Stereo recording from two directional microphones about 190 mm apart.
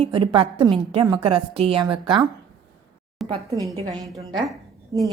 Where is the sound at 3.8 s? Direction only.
20° right (ahead or behind).